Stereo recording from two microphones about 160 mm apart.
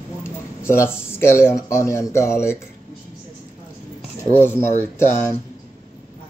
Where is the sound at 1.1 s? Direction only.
15° left (ahead or behind).